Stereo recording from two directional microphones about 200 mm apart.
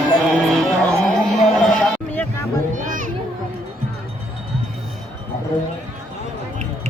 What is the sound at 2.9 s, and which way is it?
Children playing, 40° right (ahead or behind).